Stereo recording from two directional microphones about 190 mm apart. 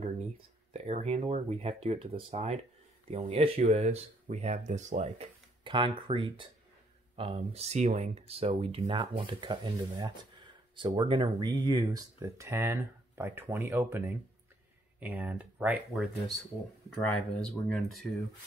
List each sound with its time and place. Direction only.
0.7 s speech: 35° right (ahead or behind); by 16.3 s 5° right (ahead or behind)
17.4 s speech: 5° left (ahead or behind)